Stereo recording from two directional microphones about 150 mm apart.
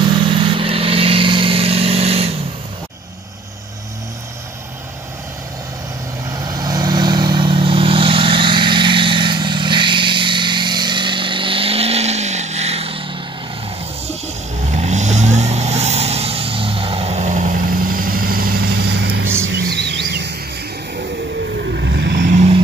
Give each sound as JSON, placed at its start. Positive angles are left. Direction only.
{"t": 0.3, "sound": "vehicle", "side_deg": -35}
{"t": 6.3, "sound": "vehicle", "side_deg": -25}
{"t": 14.0, "sound": "vehicle", "side_deg": -50}
{"t": 19.2, "sound": "music", "side_deg": -15}
{"t": 19.6, "sound": "a sound", "side_deg": -90}
{"t": 21.6, "sound": "vehicle", "side_deg": -80}